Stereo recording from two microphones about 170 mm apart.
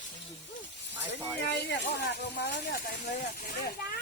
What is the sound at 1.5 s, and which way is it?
Speech, 80° left.